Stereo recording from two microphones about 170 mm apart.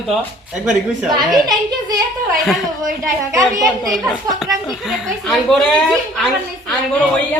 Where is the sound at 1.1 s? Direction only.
25° right (ahead or behind).